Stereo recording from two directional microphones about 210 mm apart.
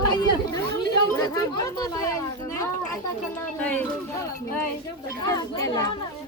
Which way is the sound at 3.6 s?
10° left (ahead or behind).